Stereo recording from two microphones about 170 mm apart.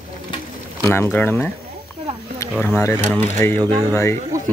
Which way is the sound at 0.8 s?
15° left (ahead or behind).